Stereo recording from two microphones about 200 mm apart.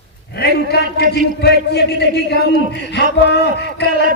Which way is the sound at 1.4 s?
55° left (ahead or behind).